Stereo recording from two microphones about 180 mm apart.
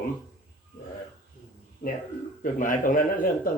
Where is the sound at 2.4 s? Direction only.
50° left (ahead or behind).